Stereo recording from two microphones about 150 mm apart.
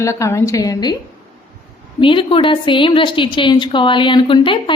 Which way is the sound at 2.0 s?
35° left (ahead or behind).